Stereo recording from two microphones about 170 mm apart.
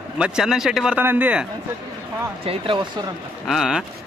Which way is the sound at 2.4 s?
30° right (ahead or behind).